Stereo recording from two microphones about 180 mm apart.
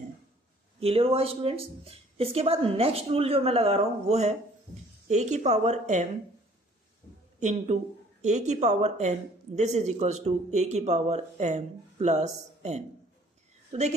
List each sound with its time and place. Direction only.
0.7 s a woman's voice: 30° right (ahead or behind)
7.3 s a woman's voice: 40° right (ahead or behind)